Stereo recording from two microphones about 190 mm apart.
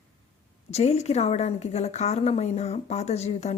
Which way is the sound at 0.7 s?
35° left (ahead or behind).